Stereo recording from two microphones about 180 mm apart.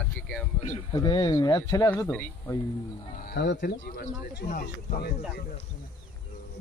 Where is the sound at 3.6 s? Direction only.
50° left (ahead or behind).